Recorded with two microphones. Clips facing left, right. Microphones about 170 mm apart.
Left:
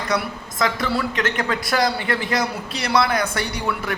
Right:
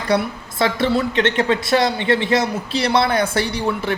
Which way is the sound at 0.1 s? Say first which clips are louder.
Right 6 dB; 30° right (ahead or behind).